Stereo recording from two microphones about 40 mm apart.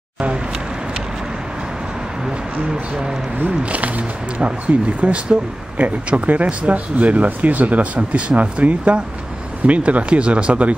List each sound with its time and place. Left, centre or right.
2.7 s speech: centre
3.4 s speech: right